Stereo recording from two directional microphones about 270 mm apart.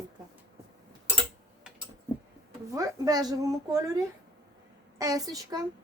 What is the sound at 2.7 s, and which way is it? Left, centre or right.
Speech, centre.